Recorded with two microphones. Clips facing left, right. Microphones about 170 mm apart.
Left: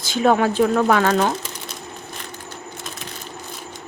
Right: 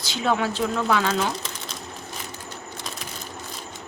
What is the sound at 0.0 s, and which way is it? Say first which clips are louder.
Speech: left 7 dB; 50° left (ahead or behind).